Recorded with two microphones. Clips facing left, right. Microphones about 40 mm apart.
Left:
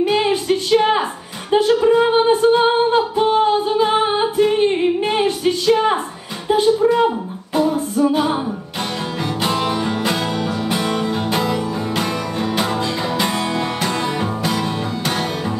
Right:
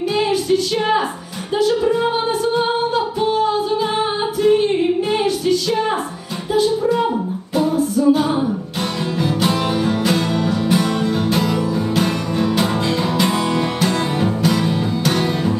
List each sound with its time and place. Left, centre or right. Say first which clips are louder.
0.1 s a sound: even; left
1.5 s music: left 3 dB; left
7.5 s a capella: even; left
7.9 s music: right 5 dB; left
9.2 s music: right 1 dB; centre
11.5 s music: right 2 dB; centre
13.7 s music: right 2 dB; centre